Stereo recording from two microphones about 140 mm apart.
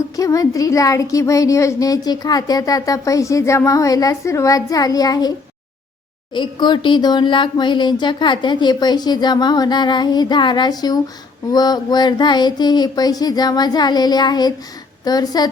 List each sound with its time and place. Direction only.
0.2 s speech: 25° left (ahead or behind)
6.3 s speech: 35° left (ahead or behind)